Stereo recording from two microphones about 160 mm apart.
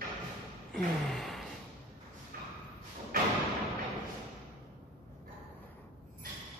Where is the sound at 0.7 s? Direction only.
Centre (ahead or behind).